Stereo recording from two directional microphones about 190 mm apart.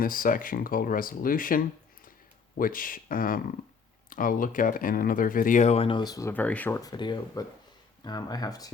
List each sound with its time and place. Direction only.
0.0 s speech: 45° left (ahead or behind); by 8.7 s 20° left (ahead or behind)